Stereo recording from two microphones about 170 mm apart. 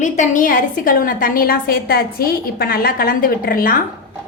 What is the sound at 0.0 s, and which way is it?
A woman's voice, 50° left (ahead or behind).